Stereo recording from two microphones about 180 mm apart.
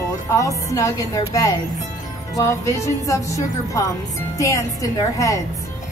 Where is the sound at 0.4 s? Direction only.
15° left (ahead or behind).